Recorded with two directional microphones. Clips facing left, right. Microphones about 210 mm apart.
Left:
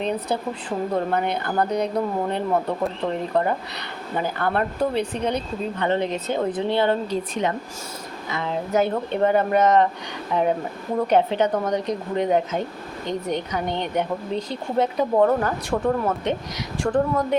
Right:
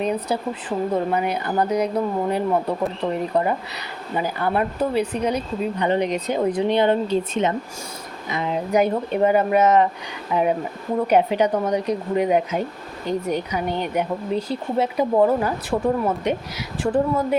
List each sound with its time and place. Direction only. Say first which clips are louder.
0.0 s speech: right 2 dB; 10° right (ahead or behind)